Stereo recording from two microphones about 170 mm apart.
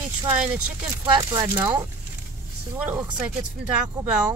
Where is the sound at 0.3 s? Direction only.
10° right (ahead or behind).